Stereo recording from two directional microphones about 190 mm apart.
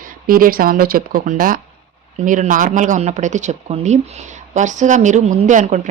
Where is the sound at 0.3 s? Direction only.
50° right (ahead or behind).